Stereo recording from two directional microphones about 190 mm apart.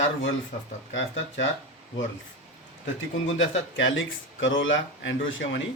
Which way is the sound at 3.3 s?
90° left.